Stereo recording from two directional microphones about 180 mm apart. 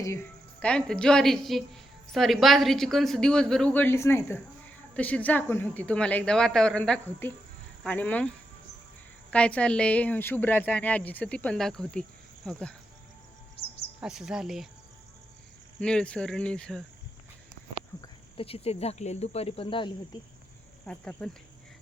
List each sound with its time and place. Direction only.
0.0 s a woman's voice: 15° left (ahead or behind)
9.3 s a woman's voice: 5° left (ahead or behind)
14.0 s a woman's voice: 5° right (ahead or behind)
15.8 s a woman's voice: 5° left (ahead or behind)
18.3 s speech: 30° left (ahead or behind)
20.8 s speech: 5° left (ahead or behind)